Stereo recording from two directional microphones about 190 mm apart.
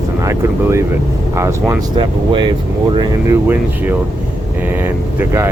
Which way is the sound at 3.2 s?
10° right (ahead or behind).